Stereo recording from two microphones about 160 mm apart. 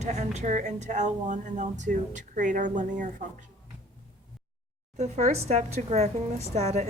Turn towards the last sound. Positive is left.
turn(degrees=-45)  # may be behind; listen again after turning